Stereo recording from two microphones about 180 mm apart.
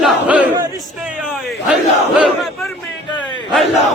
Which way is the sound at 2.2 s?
Centre (ahead or behind).